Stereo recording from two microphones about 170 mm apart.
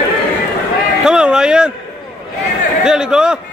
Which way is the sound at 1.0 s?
5° right (ahead or behind).